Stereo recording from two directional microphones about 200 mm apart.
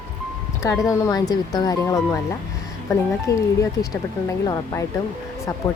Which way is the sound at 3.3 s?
20° left (ahead or behind).